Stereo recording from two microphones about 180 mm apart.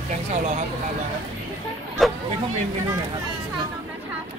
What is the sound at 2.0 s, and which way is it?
Chatter, centre (ahead or behind).